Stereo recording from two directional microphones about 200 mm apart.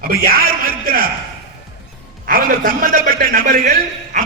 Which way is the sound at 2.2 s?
45° right (ahead or behind).